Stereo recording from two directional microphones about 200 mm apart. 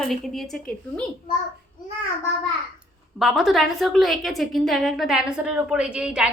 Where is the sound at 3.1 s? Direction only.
Centre (ahead or behind).